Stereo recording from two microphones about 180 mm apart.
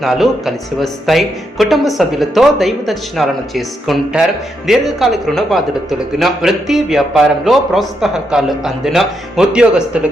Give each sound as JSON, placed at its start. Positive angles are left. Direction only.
{"t": 0.0, "sound": "speech", "side_deg": 0}